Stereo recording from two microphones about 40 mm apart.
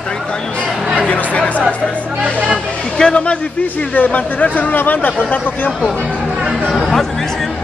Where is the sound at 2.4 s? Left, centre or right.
Left.